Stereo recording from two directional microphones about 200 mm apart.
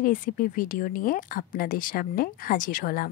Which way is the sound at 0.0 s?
45° left (ahead or behind).